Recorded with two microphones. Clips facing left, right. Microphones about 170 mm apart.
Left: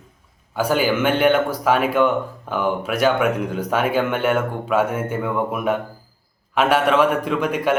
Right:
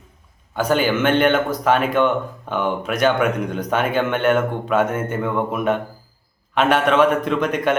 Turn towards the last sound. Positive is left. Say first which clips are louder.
# right 1 dB
turn(degrees=10)  # may be behind; listen again after turning